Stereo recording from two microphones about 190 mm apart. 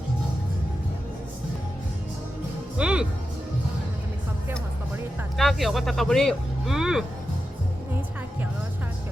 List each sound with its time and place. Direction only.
2.7 s music: 5° right (ahead or behind)
5.4 s speech: centre (ahead or behind)